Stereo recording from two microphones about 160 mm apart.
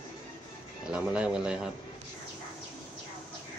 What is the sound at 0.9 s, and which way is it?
Speech, 5° right (ahead or behind).